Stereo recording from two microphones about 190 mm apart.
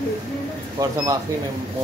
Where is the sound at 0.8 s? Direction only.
20° right (ahead or behind).